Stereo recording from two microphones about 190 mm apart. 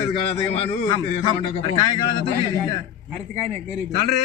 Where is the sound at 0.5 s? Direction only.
25° left (ahead or behind).